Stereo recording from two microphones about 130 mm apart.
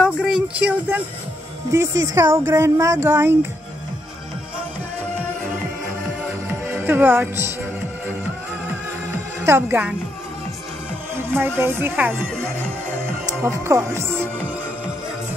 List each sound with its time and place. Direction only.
0.0 s a sound: 5° right (ahead or behind)
1.7 s speech: 20° right (ahead or behind)
6.9 s speech: 15° right (ahead or behind)
9.5 s speech: 15° right (ahead or behind)
11.3 s speech: 15° right (ahead or behind)
13.4 s speech: 20° right (ahead or behind)